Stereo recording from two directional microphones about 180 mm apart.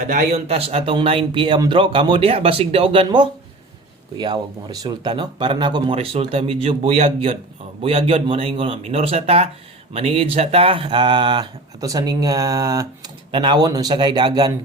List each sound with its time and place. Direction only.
0.1 s speech: 40° right (ahead or behind); by 14.5 s 20° right (ahead or behind)